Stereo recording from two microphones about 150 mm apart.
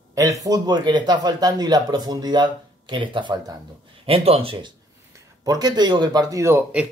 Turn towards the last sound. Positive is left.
turn(degrees=-20)  # may be behind; listen again after turning